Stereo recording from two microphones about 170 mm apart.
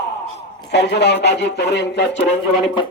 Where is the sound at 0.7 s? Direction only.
90° left.